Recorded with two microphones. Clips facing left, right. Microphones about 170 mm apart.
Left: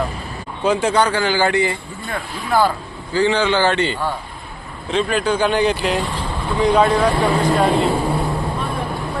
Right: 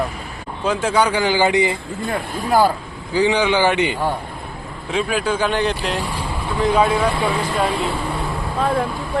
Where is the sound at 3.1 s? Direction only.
15° right (ahead or behind).